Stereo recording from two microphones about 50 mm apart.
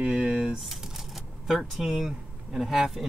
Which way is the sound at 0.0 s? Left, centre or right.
Right.